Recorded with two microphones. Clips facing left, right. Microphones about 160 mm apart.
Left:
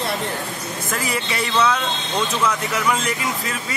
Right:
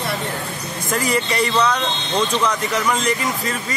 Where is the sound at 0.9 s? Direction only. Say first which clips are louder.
Right 6 dB; centre (ahead or behind).